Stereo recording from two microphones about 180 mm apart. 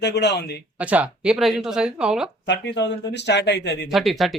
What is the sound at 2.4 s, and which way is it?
Speech, 75° left (ahead or behind).